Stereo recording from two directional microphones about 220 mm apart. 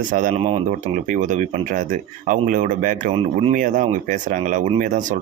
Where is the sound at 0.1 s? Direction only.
35° right (ahead or behind).